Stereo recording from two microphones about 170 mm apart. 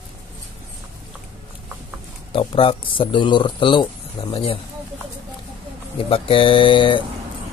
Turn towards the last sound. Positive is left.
turn(degrees=30)  # may be behind; listen again after turning